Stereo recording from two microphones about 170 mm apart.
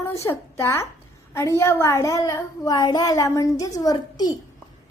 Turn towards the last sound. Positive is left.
turn(degrees=20)  # may be behind; listen again after turning